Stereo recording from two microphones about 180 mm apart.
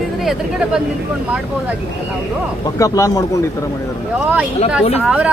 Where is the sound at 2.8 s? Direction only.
20° left (ahead or behind).